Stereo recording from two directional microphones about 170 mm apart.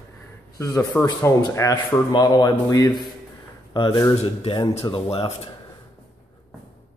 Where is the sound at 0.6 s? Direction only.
15° left (ahead or behind); by 5.5 s 35° left (ahead or behind).